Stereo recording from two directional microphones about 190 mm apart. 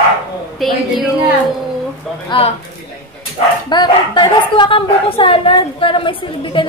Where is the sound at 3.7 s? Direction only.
25° left (ahead or behind).